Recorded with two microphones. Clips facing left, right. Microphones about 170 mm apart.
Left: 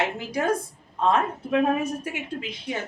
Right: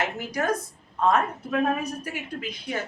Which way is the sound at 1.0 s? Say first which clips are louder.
Even; 25° left (ahead or behind).